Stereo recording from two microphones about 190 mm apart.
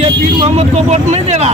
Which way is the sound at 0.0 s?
30° right (ahead or behind).